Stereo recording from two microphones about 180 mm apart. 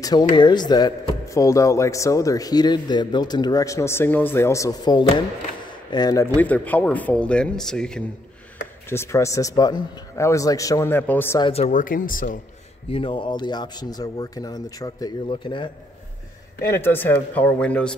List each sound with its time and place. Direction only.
0.0 s speech: 25° left (ahead or behind)
6.3 s a man's voice: 10° left (ahead or behind)
11.3 s speech: 30° left (ahead or behind); by 12.4 s 50° left (ahead or behind)
12.9 s speech: 30° left (ahead or behind)
16.7 s a man's voice: 10° left (ahead or behind)